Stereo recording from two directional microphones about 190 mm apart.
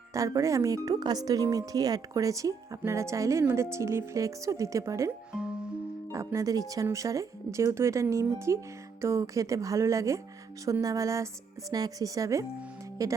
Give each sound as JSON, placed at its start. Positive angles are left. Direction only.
{"t": 0.1, "sound": "speech", "side_deg": -15}
{"t": 5.3, "sound": "music", "side_deg": -5}
{"t": 6.1, "sound": "speech", "side_deg": -15}